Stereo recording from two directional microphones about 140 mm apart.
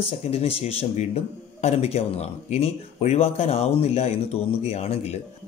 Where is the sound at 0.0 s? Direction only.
45° left (ahead or behind).